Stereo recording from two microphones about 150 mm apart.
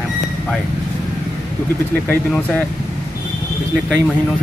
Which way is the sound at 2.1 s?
10° left (ahead or behind).